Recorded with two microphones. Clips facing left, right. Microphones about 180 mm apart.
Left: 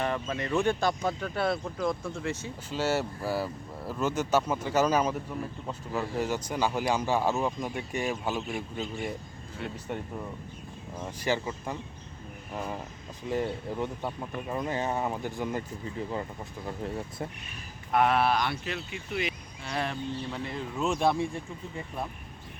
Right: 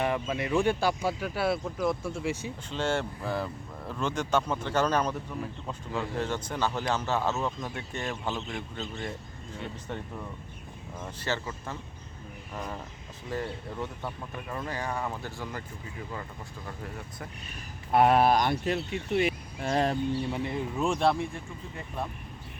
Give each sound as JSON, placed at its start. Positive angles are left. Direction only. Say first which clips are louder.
{"t": 0.0, "sound": "speech", "louder": "right 2 dB", "side_deg": -10}
{"t": 2.6, "sound": "speech", "louder": "left 1 dB", "side_deg": 5}
{"t": 13.2, "sound": "speech", "louder": "left 4 dB", "side_deg": 20}
{"t": 16.6, "sound": "speech", "louder": "left 7 dB", "side_deg": 25}
{"t": 17.9, "sound": "speech", "louder": "right 3 dB", "side_deg": -40}
{"t": 20.1, "sound": "speech", "louder": "right 4 dB", "side_deg": -15}
{"t": 20.9, "sound": "speech", "louder": "even", "side_deg": 0}